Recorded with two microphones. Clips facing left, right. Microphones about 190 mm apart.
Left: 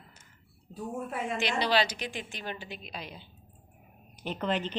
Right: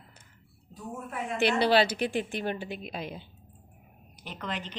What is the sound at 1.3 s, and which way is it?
A woman's voice, 55° right (ahead or behind).